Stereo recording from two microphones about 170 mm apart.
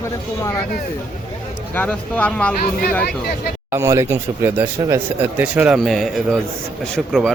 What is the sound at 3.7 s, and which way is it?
Speech, 15° right (ahead or behind).